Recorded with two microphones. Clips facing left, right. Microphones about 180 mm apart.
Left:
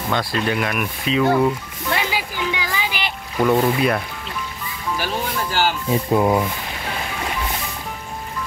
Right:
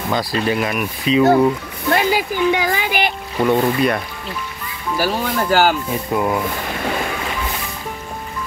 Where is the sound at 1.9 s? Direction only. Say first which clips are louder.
Right 7 dB; 50° right (ahead or behind).